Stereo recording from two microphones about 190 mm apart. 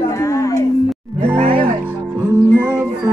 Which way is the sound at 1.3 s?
30° right (ahead or behind).